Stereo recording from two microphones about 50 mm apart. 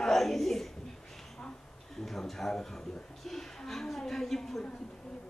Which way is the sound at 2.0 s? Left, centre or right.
Centre.